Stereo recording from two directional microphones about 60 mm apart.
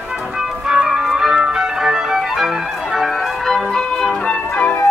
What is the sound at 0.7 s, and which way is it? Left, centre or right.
Music, centre.